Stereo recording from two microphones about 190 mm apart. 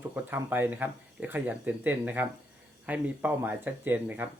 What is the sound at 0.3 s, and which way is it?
Speech, 10° right (ahead or behind).